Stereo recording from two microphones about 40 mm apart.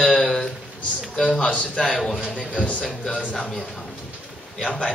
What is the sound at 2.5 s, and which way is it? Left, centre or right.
Speech, left.